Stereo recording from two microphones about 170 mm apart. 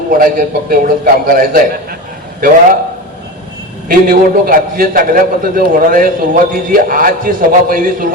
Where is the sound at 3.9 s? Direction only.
55° right (ahead or behind).